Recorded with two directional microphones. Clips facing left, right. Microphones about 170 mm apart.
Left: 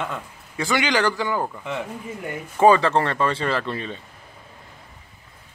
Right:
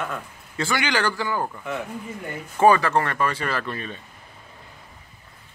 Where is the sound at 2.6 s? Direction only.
20° left (ahead or behind).